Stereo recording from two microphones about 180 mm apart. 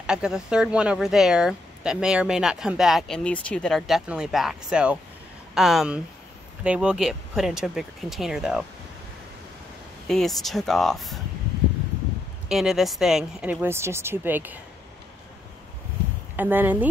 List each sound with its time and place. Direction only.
0.0 s speech: 5° right (ahead or behind)
10.0 s speech: centre (ahead or behind)
12.4 s speech: centre (ahead or behind)
16.3 s speech: 10° right (ahead or behind)